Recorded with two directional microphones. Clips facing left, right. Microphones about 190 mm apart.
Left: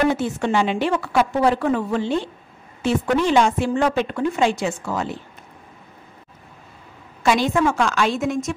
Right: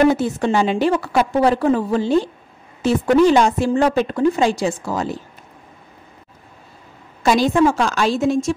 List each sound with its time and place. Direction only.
0.1 s a woman's voice: 40° right (ahead or behind)
7.2 s a woman's voice: 35° right (ahead or behind)